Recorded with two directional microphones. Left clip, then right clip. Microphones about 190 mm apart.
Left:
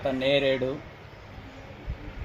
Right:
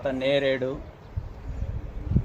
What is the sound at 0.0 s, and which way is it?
Speech, 5° left (ahead or behind).